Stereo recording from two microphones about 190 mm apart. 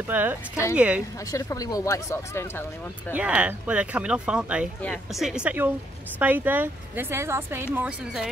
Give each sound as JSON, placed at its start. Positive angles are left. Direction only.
{"t": 0.1, "sound": "speech", "side_deg": -10}
{"t": 1.3, "sound": "speech", "side_deg": 15}
{"t": 3.1, "sound": "speech", "side_deg": -5}